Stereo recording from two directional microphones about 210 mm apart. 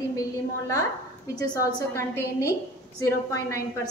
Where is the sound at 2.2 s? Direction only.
15° left (ahead or behind).